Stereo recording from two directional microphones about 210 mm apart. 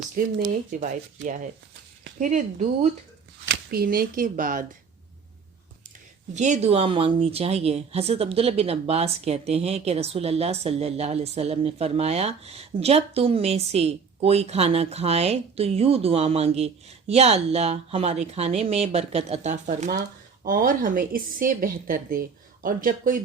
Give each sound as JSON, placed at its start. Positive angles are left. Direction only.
{"t": 0.7, "sound": "a woman's voice", "side_deg": -35}
{"t": 3.4, "sound": "speech", "side_deg": -45}
{"t": 6.3, "sound": "a woman's voice", "side_deg": -35}